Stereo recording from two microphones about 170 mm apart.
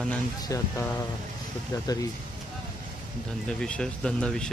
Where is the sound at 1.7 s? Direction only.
20° left (ahead or behind).